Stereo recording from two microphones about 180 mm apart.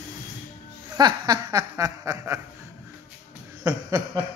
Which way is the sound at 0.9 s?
25° right (ahead or behind).